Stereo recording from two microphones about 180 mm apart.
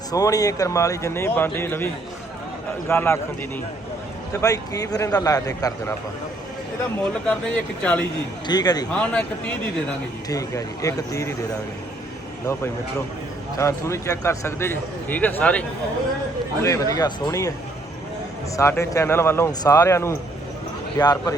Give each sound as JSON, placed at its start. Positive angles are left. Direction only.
{"t": 0.1, "sound": "a man's voice", "side_deg": 20}
{"t": 2.9, "sound": "a man's voice", "side_deg": 15}
{"t": 4.4, "sound": "a man's voice", "side_deg": 20}
{"t": 7.3, "sound": "a man's voice", "side_deg": 5}
{"t": 8.4, "sound": "a man's voice", "side_deg": 20}
{"t": 8.9, "sound": "a man's voice", "side_deg": 5}
{"t": 10.2, "sound": "a man's voice", "side_deg": 20}
{"t": 13.6, "sound": "a man's voice", "side_deg": 15}
{"t": 16.6, "sound": "a man's voice", "side_deg": 20}
{"t": 18.5, "sound": "a man's voice", "side_deg": 15}